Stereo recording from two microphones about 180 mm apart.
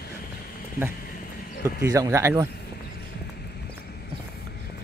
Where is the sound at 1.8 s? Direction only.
15° right (ahead or behind).